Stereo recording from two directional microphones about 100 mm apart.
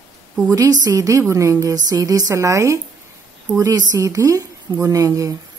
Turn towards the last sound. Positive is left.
turn(degrees=-35)  # may be behind; listen again after turning